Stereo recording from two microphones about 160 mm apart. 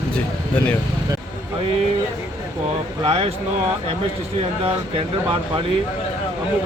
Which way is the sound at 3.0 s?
35° right (ahead or behind).